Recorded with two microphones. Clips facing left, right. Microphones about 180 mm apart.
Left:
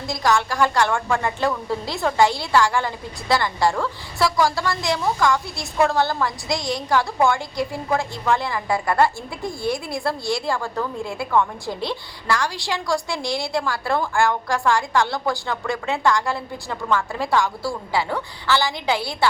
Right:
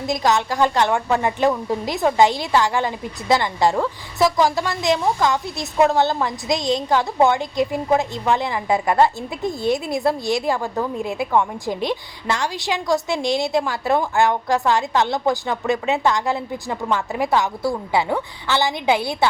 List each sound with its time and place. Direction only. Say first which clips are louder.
0.0 s a woman's voice: right 2 dB; 20° right (ahead or behind)